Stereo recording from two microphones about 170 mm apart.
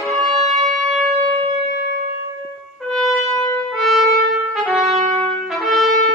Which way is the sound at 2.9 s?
Centre (ahead or behind).